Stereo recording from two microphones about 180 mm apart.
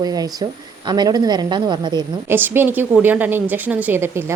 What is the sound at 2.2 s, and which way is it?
A woman's voice, 10° right (ahead or behind).